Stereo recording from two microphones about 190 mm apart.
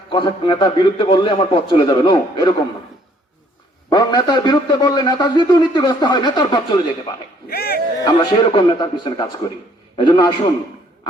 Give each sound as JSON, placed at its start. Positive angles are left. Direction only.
{"t": 0.1, "sound": "a man's voice", "side_deg": 25}
{"t": 3.8, "sound": "a man's voice", "side_deg": 20}
{"t": 7.5, "sound": "speech", "side_deg": 55}
{"t": 8.0, "sound": "a man's voice", "side_deg": 20}